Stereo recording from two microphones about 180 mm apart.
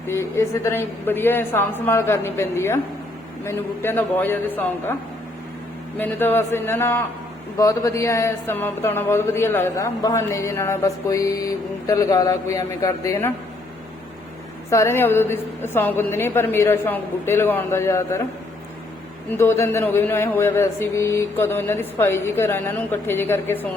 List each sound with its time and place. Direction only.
0.1 s speech: 15° left (ahead or behind)
6.0 s speech: 10° left (ahead or behind)
14.7 s speech: 15° left (ahead or behind)
19.3 s speech: 15° left (ahead or behind)